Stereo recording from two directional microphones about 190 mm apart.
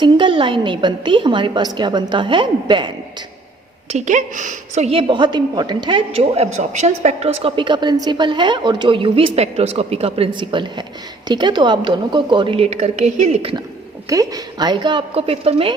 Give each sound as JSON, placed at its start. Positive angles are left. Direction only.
{"t": 0.0, "sound": "a woman's voice", "side_deg": -25}
{"t": 3.8, "sound": "a woman's voice", "side_deg": -40}
{"t": 14.1, "sound": "a woman's voice", "side_deg": -20}